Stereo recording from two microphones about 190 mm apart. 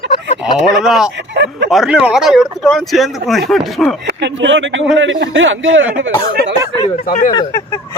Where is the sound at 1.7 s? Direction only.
5° right (ahead or behind).